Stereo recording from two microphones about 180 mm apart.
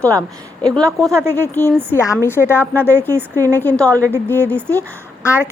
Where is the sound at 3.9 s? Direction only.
15° right (ahead or behind).